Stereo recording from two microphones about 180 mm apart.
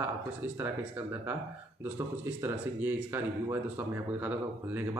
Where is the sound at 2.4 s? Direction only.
15° right (ahead or behind).